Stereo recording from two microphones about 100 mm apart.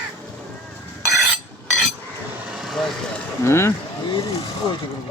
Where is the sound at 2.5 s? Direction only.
Centre (ahead or behind).